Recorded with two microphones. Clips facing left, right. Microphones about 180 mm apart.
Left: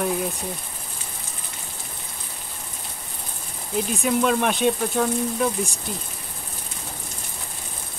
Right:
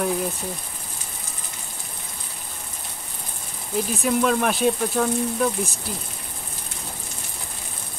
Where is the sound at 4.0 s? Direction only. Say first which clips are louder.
Even; centre (ahead or behind).